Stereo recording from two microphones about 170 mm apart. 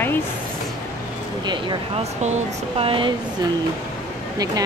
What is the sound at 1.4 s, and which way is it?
Speech, 25° right (ahead or behind).